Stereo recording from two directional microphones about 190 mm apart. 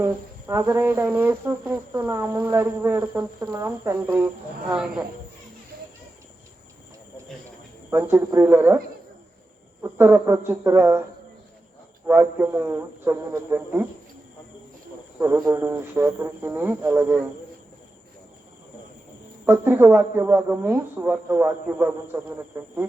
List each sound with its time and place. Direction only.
0.0 s speech: 15° right (ahead or behind)
5.7 s a sound: 55° right (ahead or behind)
7.9 s speech: 10° right (ahead or behind)
9.8 s speech: 15° right (ahead or behind)
12.0 s speech: 10° right (ahead or behind)
15.4 s speech: 15° right (ahead or behind)
19.5 s speech: 10° right (ahead or behind)